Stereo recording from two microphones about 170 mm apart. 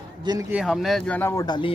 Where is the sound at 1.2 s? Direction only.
20° left (ahead or behind).